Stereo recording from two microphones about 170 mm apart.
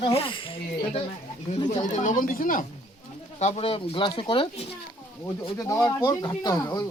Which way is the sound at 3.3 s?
40° left (ahead or behind).